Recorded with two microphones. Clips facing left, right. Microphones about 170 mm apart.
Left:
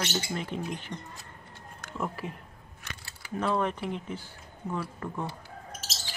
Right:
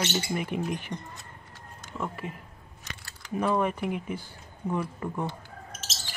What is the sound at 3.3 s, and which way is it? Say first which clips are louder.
Speech: right 2 dB; 10° right (ahead or behind).